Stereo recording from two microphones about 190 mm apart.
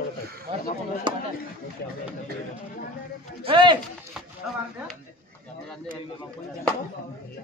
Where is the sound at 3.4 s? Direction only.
25° right (ahead or behind).